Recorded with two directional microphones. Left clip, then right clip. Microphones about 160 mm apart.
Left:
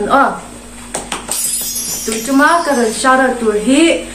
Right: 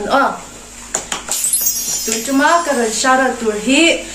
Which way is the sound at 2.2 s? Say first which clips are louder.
Left 2 dB; 30° right (ahead or behind).